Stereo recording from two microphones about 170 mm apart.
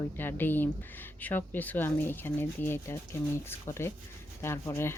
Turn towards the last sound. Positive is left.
turn(degrees=15)  # may be behind; listen again after turning